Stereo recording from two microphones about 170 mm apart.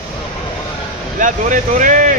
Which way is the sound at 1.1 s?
50° right (ahead or behind).